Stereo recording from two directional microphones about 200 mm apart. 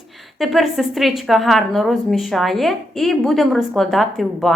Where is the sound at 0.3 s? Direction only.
Centre (ahead or behind).